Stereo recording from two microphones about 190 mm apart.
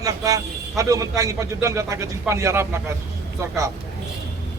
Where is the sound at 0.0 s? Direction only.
20° right (ahead or behind).